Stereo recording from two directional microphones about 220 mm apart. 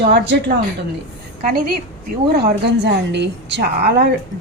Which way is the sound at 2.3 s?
45° right (ahead or behind).